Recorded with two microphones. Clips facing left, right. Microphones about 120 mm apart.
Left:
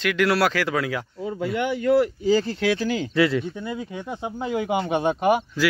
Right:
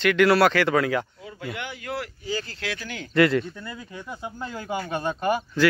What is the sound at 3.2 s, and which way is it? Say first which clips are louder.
Speech: right 2 dB; 10° left (ahead or behind).